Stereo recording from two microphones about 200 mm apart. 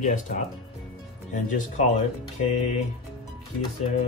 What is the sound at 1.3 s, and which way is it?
Speech, 40° left (ahead or behind).